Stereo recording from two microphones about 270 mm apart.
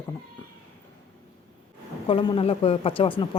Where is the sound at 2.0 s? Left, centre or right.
Centre.